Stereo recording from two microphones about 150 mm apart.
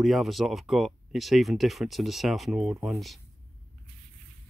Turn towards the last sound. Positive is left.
turn(degrees=0)  # may be behind; listen again after turning